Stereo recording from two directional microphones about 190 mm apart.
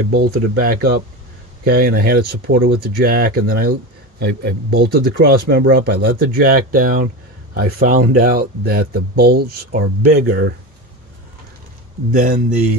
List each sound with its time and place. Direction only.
0.1 s speech: 50° right (ahead or behind)
12.1 s speech: 50° right (ahead or behind)